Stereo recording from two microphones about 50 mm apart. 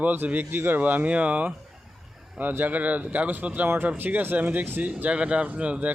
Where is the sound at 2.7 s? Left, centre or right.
Right.